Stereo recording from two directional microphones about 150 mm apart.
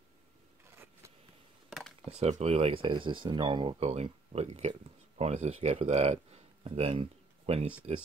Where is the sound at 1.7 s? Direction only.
Centre (ahead or behind).